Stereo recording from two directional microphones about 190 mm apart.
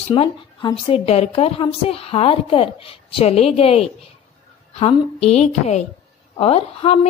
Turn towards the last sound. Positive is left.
turn(degrees=30)  # may be behind; listen again after turning